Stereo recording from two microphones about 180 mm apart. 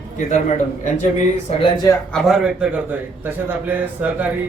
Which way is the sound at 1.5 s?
25° left (ahead or behind).